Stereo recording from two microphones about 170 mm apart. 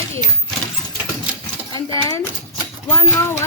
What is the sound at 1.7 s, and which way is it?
Speech, 20° left (ahead or behind).